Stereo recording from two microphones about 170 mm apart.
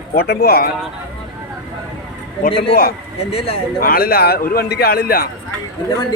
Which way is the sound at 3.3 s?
35° left (ahead or behind).